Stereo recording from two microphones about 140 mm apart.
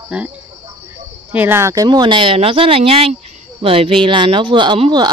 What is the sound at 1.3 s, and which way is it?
Speech, 15° right (ahead or behind).